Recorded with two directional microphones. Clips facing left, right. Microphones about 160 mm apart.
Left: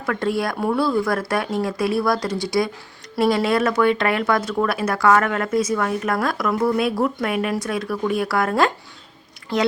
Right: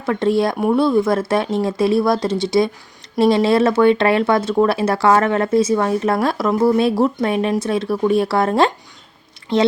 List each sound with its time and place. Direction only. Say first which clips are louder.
0.0 s speech: right 6 dB; 25° right (ahead or behind)